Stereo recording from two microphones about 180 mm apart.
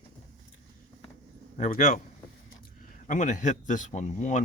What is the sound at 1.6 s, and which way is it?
Speech, 45° left (ahead or behind).